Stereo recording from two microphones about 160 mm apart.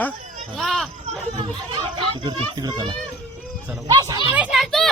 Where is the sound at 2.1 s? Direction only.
30° right (ahead or behind).